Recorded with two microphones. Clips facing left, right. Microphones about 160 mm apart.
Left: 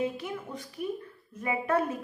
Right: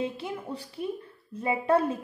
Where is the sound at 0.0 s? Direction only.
30° right (ahead or behind).